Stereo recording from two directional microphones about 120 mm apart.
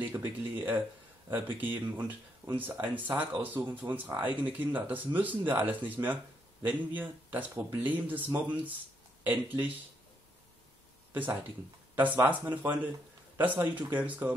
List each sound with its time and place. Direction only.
0.0 s speech: 15° right (ahead or behind)
11.9 s speech: 15° right (ahead or behind)